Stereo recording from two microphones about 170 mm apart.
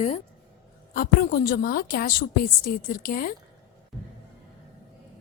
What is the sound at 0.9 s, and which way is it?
A woman's voice, 55° left (ahead or behind).